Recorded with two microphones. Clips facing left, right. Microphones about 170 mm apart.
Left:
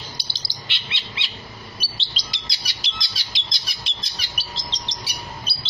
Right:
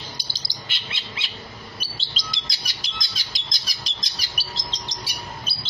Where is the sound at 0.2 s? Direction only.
45° right (ahead or behind).